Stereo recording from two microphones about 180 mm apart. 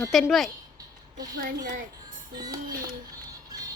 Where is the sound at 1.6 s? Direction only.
50° right (ahead or behind).